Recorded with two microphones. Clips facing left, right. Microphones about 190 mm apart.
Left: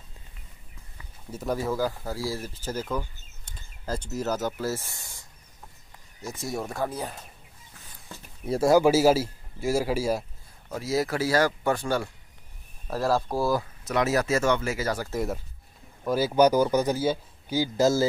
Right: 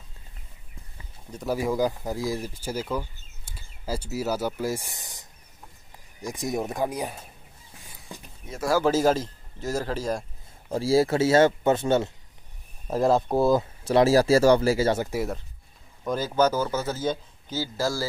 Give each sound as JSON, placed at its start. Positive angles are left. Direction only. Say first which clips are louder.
{"t": 1.3, "sound": "speech", "louder": "right 1 dB", "side_deg": 0}
{"t": 1.6, "sound": "speech", "louder": "right 6 dB", "side_deg": -15}
{"t": 6.2, "sound": "speech", "louder": "right 4 dB", "side_deg": -15}
{"t": 8.1, "sound": "a sound", "louder": "right 3 dB", "side_deg": -15}
{"t": 8.5, "sound": "speech", "louder": "left 6 dB", "side_deg": 30}
{"t": 8.7, "sound": "a man's voice", "louder": "left 1 dB", "side_deg": 10}
{"t": 10.7, "sound": "speech", "louder": "right 6 dB", "side_deg": -30}
{"t": 16.0, "sound": "a man's voice", "louder": "left 3 dB", "side_deg": 5}